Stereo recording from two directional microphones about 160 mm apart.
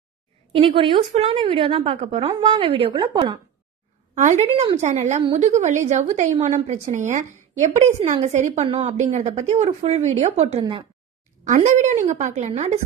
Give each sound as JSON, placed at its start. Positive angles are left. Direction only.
{"t": 0.6, "sound": "a woman's voice", "side_deg": -35}
{"t": 4.1, "sound": "a woman's voice", "side_deg": -50}